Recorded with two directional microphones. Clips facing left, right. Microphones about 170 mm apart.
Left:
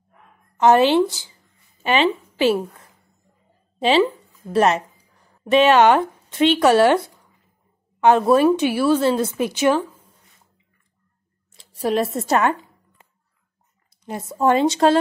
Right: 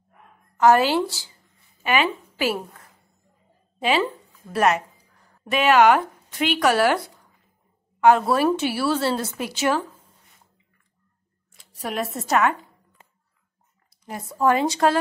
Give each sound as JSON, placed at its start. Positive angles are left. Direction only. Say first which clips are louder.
{"t": 0.6, "sound": "a woman's voice", "louder": "left 3 dB", "side_deg": 20}
{"t": 4.5, "sound": "a woman's voice", "louder": "left 3 dB", "side_deg": 30}
{"t": 11.5, "sound": "speech", "louder": "left 8 dB", "side_deg": 30}
{"t": 14.0, "sound": "speech", "louder": "left 2 dB", "side_deg": 25}